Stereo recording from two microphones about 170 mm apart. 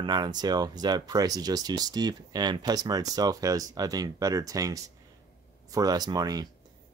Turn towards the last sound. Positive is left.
turn(degrees=-25)  # may be behind; listen again after turning